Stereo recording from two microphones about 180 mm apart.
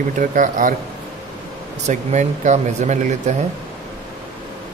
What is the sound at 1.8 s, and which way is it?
Speech, 40° right (ahead or behind).